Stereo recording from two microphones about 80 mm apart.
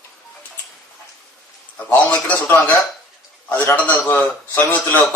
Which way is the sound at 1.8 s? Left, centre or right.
Left.